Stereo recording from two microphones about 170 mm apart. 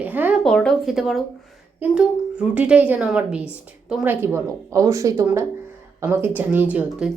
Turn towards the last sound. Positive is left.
turn(degrees=-10)  # may be behind; listen again after turning